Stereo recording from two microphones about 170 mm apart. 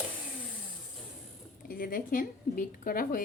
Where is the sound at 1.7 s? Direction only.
55° left (ahead or behind).